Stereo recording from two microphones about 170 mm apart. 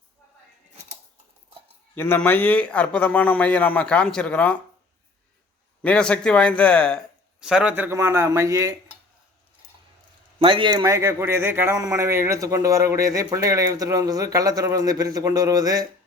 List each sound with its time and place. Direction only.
2.0 s a man's voice: 10° left (ahead or behind)
5.8 s a man's voice: 5° left (ahead or behind)
7.4 s speech: 5° right (ahead or behind)
10.4 s a man's voice: 30° right (ahead or behind)